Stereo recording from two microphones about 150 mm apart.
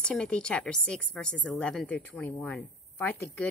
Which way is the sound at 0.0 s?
5° left (ahead or behind).